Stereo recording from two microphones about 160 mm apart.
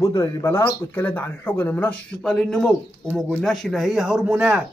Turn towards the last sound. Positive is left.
turn(degrees=-5)  # may be behind; listen again after turning